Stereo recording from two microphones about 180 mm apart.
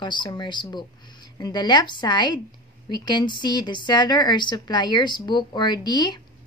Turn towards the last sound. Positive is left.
turn(degrees=25)  # may be behind; listen again after turning